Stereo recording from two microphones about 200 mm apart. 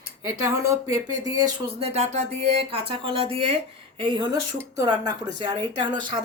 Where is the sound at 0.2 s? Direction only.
15° right (ahead or behind).